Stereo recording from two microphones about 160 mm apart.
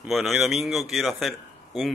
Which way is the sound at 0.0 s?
Centre (ahead or behind).